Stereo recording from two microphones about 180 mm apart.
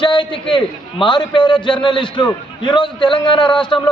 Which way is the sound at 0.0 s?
25° left (ahead or behind).